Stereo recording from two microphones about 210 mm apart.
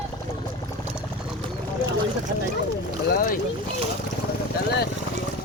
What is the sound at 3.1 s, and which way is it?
Boat, 45° left (ahead or behind).